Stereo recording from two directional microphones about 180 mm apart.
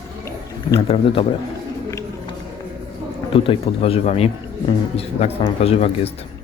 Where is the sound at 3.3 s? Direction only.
30° left (ahead or behind).